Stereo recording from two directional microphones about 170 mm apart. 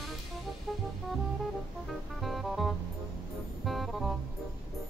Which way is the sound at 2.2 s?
Centre (ahead or behind).